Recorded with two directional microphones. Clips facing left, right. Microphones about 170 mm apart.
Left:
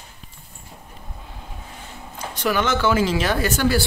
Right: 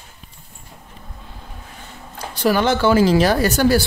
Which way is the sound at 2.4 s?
35° right (ahead or behind).